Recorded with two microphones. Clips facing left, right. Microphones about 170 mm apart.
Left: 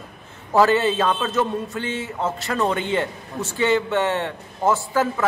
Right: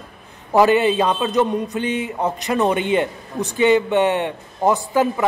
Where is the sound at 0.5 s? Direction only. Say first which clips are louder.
Right 3 dB; 15° right (ahead or behind).